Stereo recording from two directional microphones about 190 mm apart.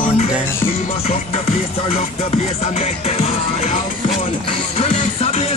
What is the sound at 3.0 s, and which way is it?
Music, 35° left (ahead or behind).